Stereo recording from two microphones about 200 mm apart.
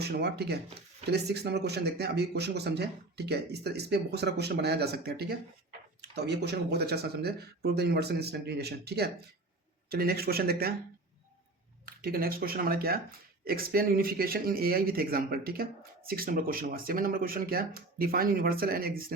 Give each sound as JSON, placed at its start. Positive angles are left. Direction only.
{"t": 0.0, "sound": "speech", "side_deg": -55}
{"t": 11.9, "sound": "speech", "side_deg": -50}